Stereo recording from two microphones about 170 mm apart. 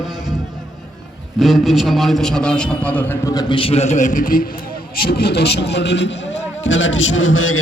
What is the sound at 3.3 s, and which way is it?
A man's voice, 25° left (ahead or behind).